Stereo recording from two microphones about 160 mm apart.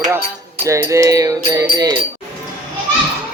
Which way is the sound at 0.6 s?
20° right (ahead or behind).